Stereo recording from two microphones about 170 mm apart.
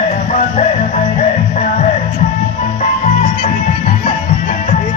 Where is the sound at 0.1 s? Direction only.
40° left (ahead or behind).